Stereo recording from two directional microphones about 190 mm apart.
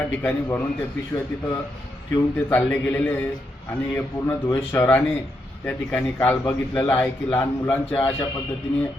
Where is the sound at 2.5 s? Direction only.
10° left (ahead or behind).